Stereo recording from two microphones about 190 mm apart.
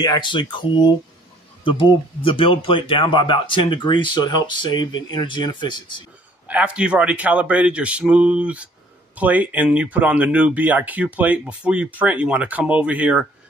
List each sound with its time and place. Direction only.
0.0 s speech: 25° left (ahead or behind)
6.4 s speech: 5° right (ahead or behind)